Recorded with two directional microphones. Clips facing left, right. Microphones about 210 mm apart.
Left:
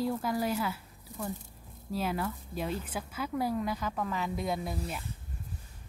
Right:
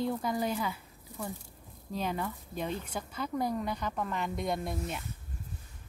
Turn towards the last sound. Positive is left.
turn(degrees=0)  # may be behind; listen again after turning